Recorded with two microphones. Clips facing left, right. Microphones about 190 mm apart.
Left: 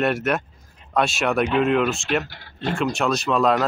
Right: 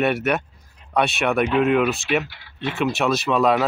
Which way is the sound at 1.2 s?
Centre (ahead or behind).